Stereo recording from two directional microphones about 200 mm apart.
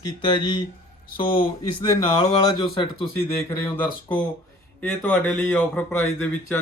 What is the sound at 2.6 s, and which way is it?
Speech, 25° left (ahead or behind).